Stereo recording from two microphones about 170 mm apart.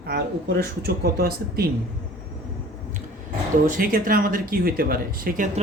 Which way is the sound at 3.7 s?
55° right (ahead or behind).